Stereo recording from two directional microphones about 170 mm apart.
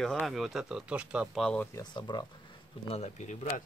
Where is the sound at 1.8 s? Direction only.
25° left (ahead or behind).